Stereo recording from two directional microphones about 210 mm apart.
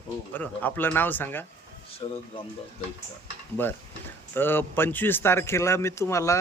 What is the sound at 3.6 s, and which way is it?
A man's voice, 10° left (ahead or behind).